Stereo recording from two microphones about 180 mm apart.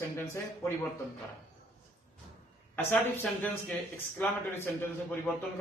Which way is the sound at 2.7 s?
10° left (ahead or behind).